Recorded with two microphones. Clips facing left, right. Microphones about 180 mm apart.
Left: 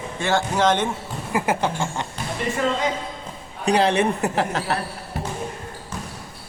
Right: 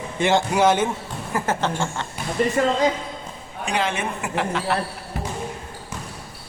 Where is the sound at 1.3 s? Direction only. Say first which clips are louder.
Left 1 dB; 10° left (ahead or behind).